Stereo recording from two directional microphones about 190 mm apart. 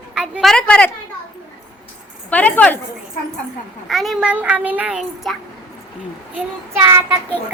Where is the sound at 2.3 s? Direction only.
10° left (ahead or behind).